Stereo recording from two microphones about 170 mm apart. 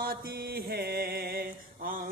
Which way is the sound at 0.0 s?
60° right (ahead or behind).